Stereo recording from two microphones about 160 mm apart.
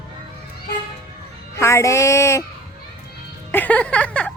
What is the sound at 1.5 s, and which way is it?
Music, 20° left (ahead or behind).